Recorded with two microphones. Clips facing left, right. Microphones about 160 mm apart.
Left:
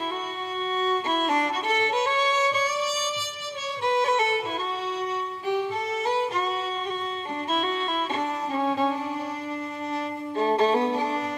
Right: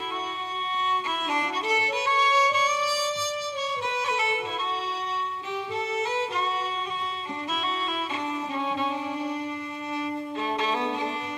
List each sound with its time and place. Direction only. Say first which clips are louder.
3.8 s music: left 10 dB; 45° left (ahead or behind)
8.5 s music: left 6 dB; 45° left (ahead or behind)
10.4 s violin: left 8 dB; 40° left (ahead or behind)